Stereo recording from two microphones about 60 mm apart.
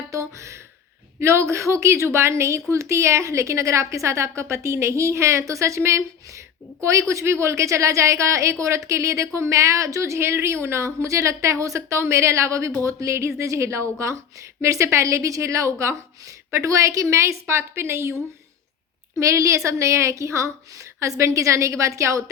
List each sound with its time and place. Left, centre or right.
0.1 s a sound: right
1.2 s a woman's voice: right
19.2 s a woman's voice: right